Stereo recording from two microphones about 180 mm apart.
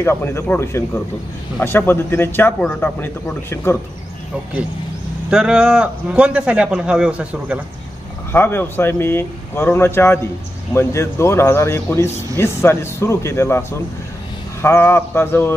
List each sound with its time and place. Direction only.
0.0 s a man's voice: 15° left (ahead or behind)
5.3 s a man's voice: 5° right (ahead or behind)
8.3 s a man's voice: 10° left (ahead or behind)